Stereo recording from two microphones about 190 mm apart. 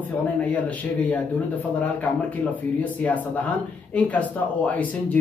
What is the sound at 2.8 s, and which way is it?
Speech, 10° left (ahead or behind).